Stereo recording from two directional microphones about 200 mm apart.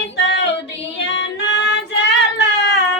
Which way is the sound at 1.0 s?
65° left (ahead or behind).